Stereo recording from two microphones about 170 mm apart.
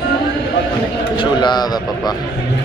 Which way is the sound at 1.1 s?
25° left (ahead or behind).